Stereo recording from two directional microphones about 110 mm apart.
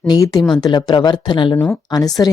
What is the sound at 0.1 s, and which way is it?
Speech, 35° left (ahead or behind).